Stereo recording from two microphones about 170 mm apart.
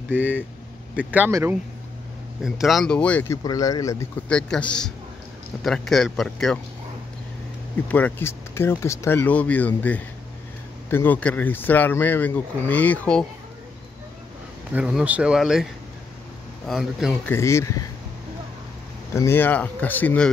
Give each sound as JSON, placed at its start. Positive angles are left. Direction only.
{"t": 0.1, "sound": "speech", "side_deg": -10}
{"t": 2.4, "sound": "speech", "side_deg": 0}
{"t": 3.4, "sound": "speech", "side_deg": 20}
{"t": 4.3, "sound": "speech", "side_deg": 5}
{"t": 7.9, "sound": "speech", "side_deg": 10}
{"t": 14.7, "sound": "speech", "side_deg": -5}
{"t": 17.3, "sound": "speech", "side_deg": 15}
{"t": 19.1, "sound": "speech", "side_deg": 15}